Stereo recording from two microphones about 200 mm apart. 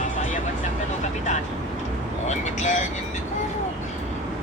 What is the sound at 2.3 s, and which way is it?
Speech, 35° left (ahead or behind).